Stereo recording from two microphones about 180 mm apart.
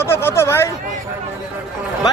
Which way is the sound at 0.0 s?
15° left (ahead or behind).